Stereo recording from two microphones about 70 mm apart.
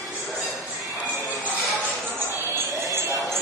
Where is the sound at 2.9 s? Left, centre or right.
Right.